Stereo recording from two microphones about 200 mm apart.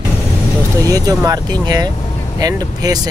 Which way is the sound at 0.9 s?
15° right (ahead or behind).